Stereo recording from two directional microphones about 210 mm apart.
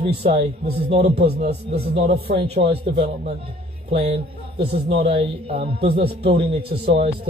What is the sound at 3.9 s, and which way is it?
A man's voice, 30° right (ahead or behind).